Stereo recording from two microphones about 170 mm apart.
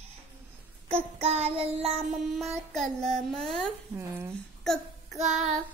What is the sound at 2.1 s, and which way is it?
Speech, centre (ahead or behind).